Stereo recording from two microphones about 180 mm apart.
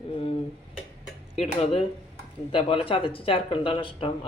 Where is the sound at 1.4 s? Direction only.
35° left (ahead or behind).